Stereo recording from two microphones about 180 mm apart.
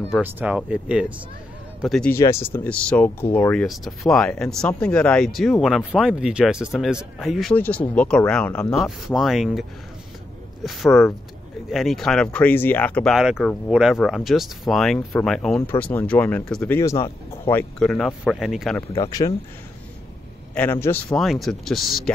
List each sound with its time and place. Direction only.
0.1 s speech: 10° right (ahead or behind)
2.1 s speech: 15° left (ahead or behind)
3.6 s speech: centre (ahead or behind)
18.9 s speech: 20° left (ahead or behind)
20.5 s speech: 10° left (ahead or behind)